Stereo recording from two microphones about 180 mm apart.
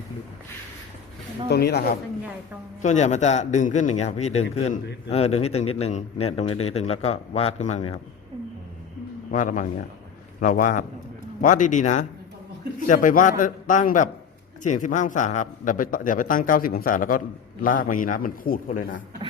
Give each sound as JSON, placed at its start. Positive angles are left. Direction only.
{"t": 1.5, "sound": "speech", "side_deg": 65}
{"t": 2.8, "sound": "speech", "side_deg": 40}
{"t": 9.3, "sound": "a man's voice", "side_deg": 45}